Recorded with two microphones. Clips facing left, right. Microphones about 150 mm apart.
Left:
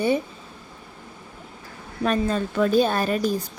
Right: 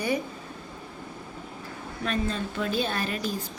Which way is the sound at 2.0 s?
45° left (ahead or behind).